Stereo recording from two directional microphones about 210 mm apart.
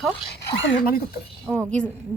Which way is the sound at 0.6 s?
45° left (ahead or behind).